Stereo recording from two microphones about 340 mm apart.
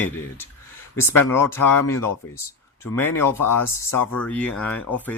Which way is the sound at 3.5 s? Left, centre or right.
Left.